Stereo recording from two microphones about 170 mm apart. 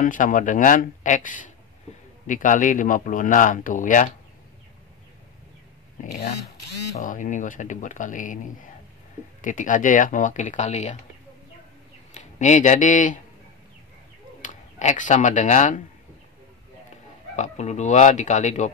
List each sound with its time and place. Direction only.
0.0 s a man's voice: 50° left (ahead or behind)
6.1 s speech: 65° left (ahead or behind)
7.0 s a man's voice: 50° left (ahead or behind)
12.1 s speech: 45° left (ahead or behind)
14.4 s speech: 45° left (ahead or behind)
17.4 s a man's voice: 45° left (ahead or behind)